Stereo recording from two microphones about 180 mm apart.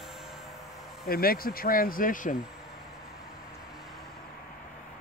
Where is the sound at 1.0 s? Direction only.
55° left (ahead or behind).